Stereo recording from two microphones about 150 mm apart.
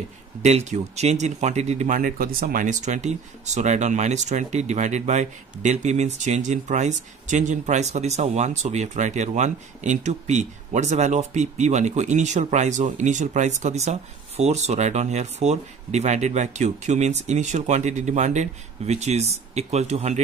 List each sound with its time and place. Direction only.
0.4 s speech: 45° right (ahead or behind)
2.0 s speech: 70° right (ahead or behind); by 20.2 s 50° right (ahead or behind)